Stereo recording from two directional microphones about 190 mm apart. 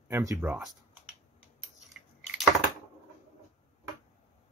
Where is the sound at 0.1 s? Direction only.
15° right (ahead or behind).